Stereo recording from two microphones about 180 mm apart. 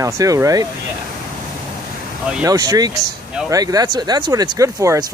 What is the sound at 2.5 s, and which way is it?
Speech, 20° right (ahead or behind).